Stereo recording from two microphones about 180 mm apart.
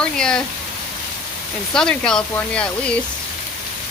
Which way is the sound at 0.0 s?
5° left (ahead or behind).